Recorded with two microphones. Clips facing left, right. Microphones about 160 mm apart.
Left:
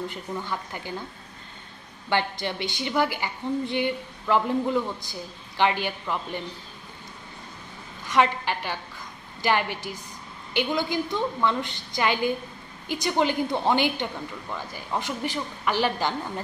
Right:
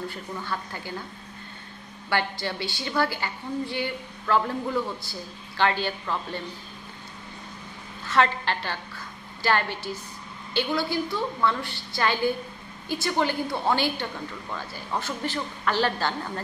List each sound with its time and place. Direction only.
0.1 s a woman's voice: 15° left (ahead or behind)
2.0 s a woman's voice: 20° left (ahead or behind)
8.0 s a woman's voice: 15° left (ahead or behind)